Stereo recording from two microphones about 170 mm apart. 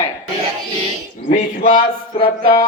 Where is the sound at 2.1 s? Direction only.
30° left (ahead or behind).